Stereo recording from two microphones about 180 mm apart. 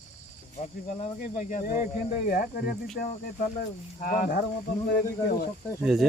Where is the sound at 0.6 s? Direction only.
40° left (ahead or behind).